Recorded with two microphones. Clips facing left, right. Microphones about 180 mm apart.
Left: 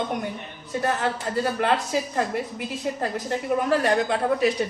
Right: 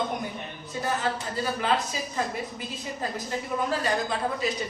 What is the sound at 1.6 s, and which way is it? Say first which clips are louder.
Speech: left 4 dB; 65° left (ahead or behind).